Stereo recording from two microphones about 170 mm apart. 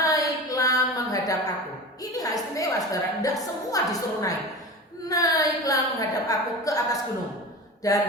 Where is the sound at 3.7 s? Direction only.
20° left (ahead or behind).